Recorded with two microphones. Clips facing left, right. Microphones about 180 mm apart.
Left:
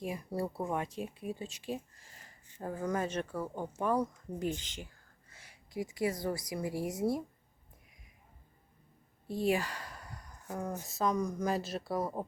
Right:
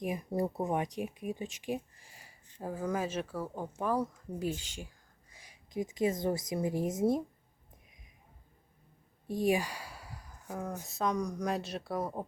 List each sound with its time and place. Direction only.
0.0 s a woman's voice: 20° right (ahead or behind)
9.2 s speech: 15° right (ahead or behind)